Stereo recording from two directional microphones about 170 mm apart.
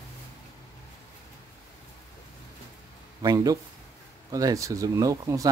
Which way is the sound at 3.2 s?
20° right (ahead or behind).